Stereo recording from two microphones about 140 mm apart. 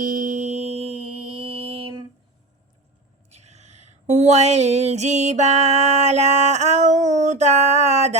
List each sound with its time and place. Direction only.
0.0 s music: 70° right (ahead or behind); by 0.9 s 50° right (ahead or behind)
1.4 s mantra: 40° right (ahead or behind)
3.2 s a sound: 50° right (ahead or behind)